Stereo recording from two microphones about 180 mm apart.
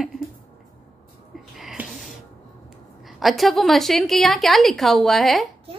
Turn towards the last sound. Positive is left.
turn(degrees=0)  # may be behind; listen again after turning